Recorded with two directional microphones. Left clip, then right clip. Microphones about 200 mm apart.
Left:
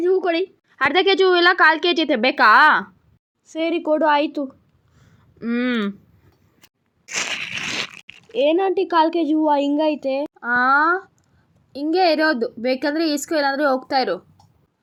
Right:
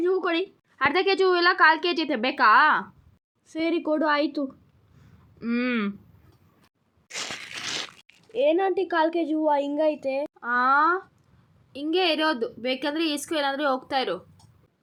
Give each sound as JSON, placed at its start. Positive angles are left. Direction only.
{"t": 0.0, "sound": "a sound", "side_deg": 10}
{"t": 0.8, "sound": "a woman's voice", "side_deg": 20}
{"t": 8.3, "sound": "a woman's voice", "side_deg": 25}
{"t": 10.4, "sound": "a woman's voice", "side_deg": 10}